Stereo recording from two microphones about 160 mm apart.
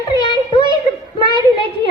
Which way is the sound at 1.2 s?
30° right (ahead or behind).